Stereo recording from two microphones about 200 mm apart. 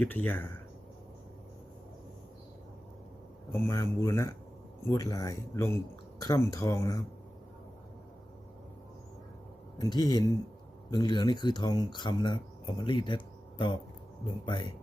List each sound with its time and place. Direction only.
0.0 s speech: 10° left (ahead or behind)
3.5 s speech: 15° left (ahead or behind)
9.7 s speech: 20° left (ahead or behind)